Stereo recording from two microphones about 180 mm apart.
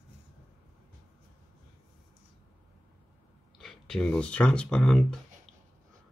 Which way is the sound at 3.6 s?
Centre (ahead or behind).